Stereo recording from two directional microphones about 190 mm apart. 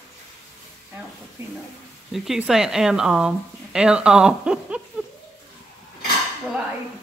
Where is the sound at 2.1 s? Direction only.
Centre (ahead or behind).